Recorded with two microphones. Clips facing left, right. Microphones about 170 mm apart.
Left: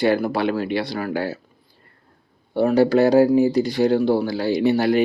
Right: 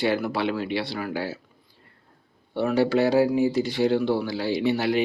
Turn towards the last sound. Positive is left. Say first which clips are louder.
# left 5 dB
turn(degrees=40)  # may be behind; listen again after turning